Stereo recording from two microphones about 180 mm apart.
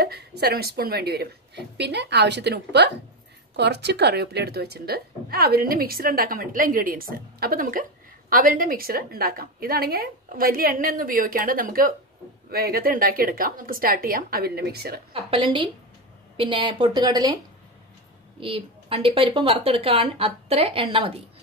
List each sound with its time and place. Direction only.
0.0 s a woman's voice: 60° right (ahead or behind)
15.1 s a woman's voice: 30° right (ahead or behind)
18.4 s a woman's voice: 30° right (ahead or behind)